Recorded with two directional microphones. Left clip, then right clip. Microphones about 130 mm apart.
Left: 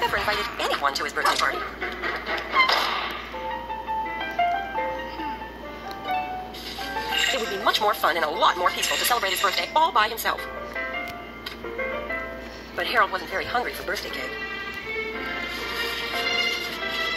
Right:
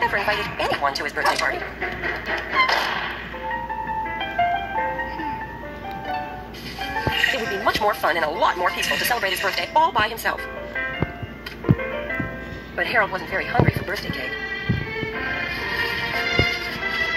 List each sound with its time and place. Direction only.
0.0 s a sound: 50° right (ahead or behind)
6.9 s speech: 50° right (ahead or behind)
12.7 s speech: 45° right (ahead or behind)
15.1 s music: 40° right (ahead or behind)